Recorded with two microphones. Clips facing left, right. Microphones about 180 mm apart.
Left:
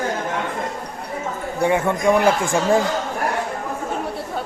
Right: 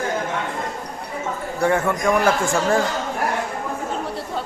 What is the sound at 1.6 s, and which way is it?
Speech, 15° left (ahead or behind).